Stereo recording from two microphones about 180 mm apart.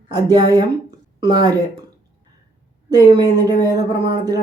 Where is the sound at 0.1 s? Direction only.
20° right (ahead or behind).